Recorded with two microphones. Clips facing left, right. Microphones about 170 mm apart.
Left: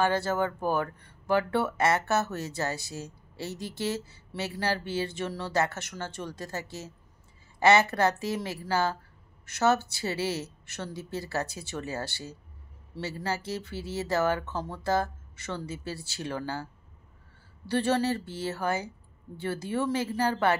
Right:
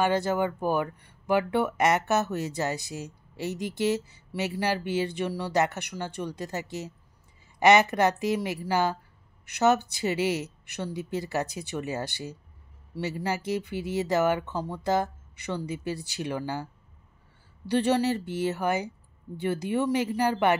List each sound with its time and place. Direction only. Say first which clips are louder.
0.0 s speech: right 2 dB; 15° right (ahead or behind)
17.6 s speech: right 2 dB; 15° right (ahead or behind)